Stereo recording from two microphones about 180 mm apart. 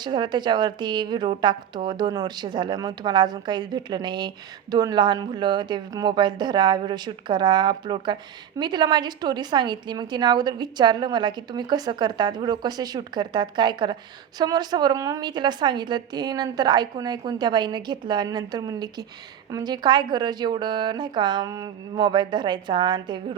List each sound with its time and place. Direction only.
0.0 s a woman's voice: 25° right (ahead or behind)